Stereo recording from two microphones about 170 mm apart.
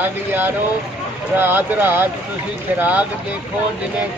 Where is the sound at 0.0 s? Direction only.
10° right (ahead or behind).